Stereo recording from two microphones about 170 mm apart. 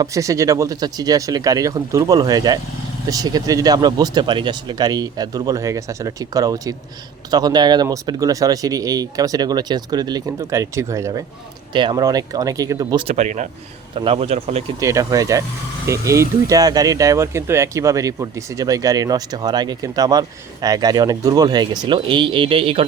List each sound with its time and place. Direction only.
0.0 s speech: 20° right (ahead or behind)
11.7 s speech: 30° right (ahead or behind)
13.1 s a man's voice: 45° right (ahead or behind)
14.8 s speech: 20° right (ahead or behind)